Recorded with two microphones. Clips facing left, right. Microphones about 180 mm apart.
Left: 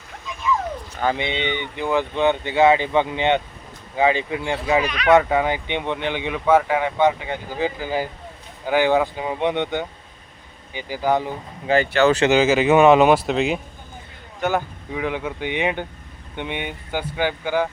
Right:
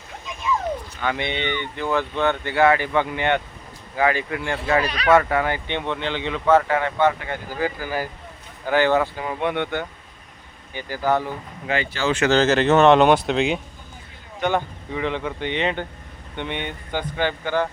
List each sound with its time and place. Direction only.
1.1 s speech: 15° left (ahead or behind)
12.0 s speech: 70° left (ahead or behind)
12.3 s speech: 10° left (ahead or behind)